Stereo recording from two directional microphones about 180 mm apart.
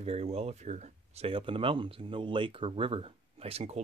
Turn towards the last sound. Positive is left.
turn(degrees=-35)  # may be behind; listen again after turning